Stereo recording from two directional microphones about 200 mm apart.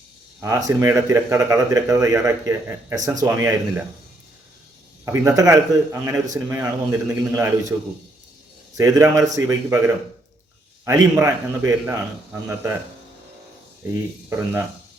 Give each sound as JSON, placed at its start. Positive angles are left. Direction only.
{"t": 0.4, "sound": "speech", "side_deg": -15}
{"t": 5.0, "sound": "speech", "side_deg": -15}
{"t": 8.7, "sound": "speech", "side_deg": -15}
{"t": 13.9, "sound": "speech", "side_deg": -10}